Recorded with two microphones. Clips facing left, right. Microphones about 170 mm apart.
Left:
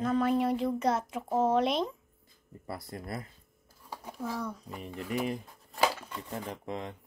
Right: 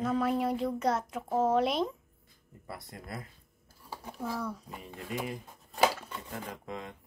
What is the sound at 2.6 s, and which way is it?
Speech, 30° left (ahead or behind).